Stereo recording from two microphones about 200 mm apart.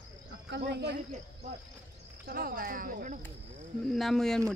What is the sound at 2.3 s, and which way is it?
Speech, 45° right (ahead or behind).